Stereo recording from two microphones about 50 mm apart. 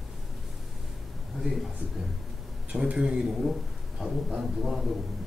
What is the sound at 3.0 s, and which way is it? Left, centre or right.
Speech, centre.